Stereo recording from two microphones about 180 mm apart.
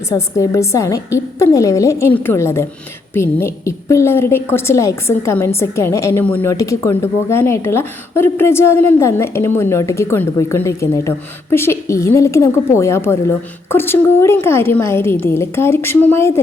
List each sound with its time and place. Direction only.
0.1 s a woman's voice: 15° left (ahead or behind)